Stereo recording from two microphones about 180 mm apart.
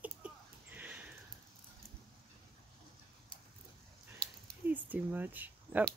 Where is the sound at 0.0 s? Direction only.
10° right (ahead or behind).